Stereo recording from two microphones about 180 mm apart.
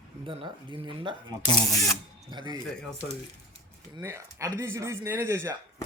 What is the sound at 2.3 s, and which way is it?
Speech, 25° right (ahead or behind).